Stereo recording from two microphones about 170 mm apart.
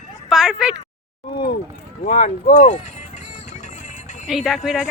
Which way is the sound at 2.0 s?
50° left (ahead or behind).